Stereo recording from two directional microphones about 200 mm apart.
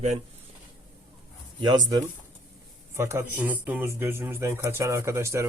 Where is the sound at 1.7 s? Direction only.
20° right (ahead or behind).